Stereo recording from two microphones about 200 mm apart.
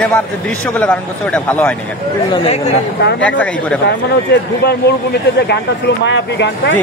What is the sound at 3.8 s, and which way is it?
Speech, 55° left (ahead or behind).